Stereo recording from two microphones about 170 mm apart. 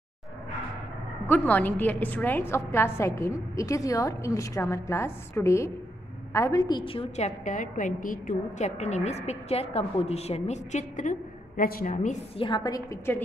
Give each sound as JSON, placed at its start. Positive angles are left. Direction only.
{"t": 1.2, "sound": "a woman's voice", "side_deg": 10}
{"t": 11.9, "sound": "a woman's voice", "side_deg": 45}
{"t": 12.4, "sound": "a woman's voice", "side_deg": 25}